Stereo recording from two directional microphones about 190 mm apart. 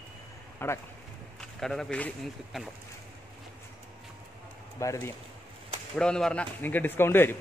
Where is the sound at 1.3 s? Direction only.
5° left (ahead or behind).